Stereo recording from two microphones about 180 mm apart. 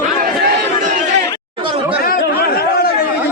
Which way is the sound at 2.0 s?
55° left (ahead or behind).